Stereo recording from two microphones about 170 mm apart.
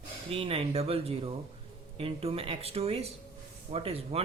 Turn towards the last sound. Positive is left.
turn(degrees=-35)  # may be behind; listen again after turning